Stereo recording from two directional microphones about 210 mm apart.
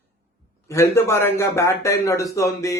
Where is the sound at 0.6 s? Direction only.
15° left (ahead or behind).